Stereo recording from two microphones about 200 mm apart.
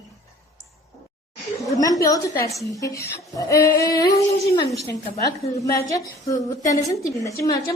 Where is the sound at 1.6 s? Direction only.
15° left (ahead or behind).